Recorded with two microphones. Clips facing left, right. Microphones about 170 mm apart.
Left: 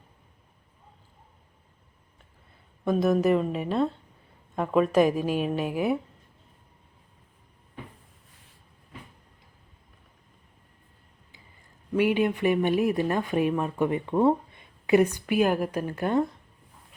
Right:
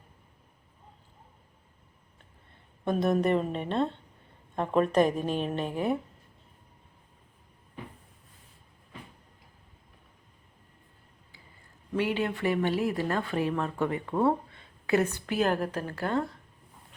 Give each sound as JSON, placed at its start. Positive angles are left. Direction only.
{"t": 2.8, "sound": "a woman's voice", "side_deg": 0}
{"t": 11.9, "sound": "speech", "side_deg": 15}